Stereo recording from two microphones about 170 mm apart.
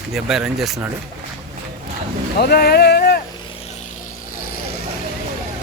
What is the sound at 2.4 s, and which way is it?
Speech, 65° left (ahead or behind).